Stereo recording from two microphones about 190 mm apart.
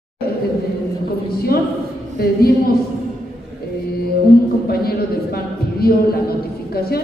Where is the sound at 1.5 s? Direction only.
55° left (ahead or behind).